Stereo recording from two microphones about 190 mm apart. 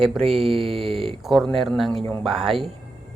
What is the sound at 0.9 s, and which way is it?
Speech, 30° right (ahead or behind).